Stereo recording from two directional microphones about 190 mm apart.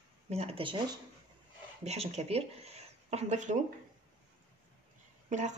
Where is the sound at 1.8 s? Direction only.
35° right (ahead or behind).